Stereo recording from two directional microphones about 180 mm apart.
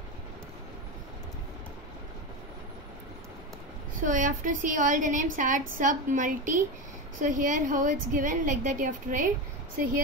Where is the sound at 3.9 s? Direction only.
45° right (ahead or behind).